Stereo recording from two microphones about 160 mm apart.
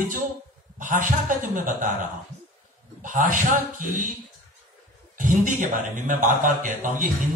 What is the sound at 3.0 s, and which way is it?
Speech, 55° right (ahead or behind).